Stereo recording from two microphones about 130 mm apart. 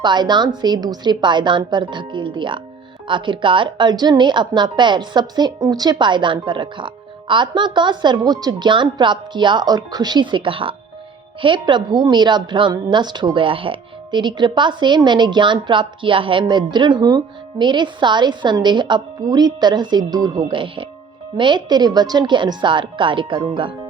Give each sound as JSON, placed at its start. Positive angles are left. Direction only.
{"t": 0.0, "sound": "a woman's voice", "side_deg": -35}
{"t": 20.5, "sound": "a woman's voice", "side_deg": -40}